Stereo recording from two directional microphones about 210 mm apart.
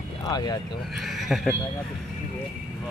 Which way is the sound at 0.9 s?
Centre (ahead or behind).